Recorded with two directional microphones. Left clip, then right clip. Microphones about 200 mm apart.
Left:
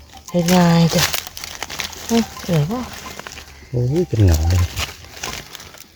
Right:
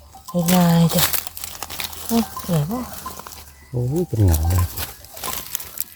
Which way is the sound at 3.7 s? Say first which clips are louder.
Left 4 dB; centre (ahead or behind).